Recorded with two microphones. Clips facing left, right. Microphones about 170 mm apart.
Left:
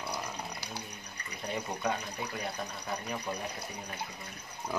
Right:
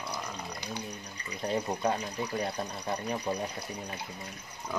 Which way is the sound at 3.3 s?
30° right (ahead or behind).